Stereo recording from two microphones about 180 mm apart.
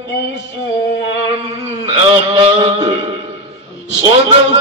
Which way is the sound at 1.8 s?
30° right (ahead or behind).